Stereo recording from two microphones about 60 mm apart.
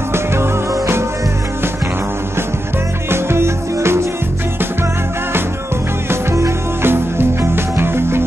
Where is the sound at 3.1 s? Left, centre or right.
Right.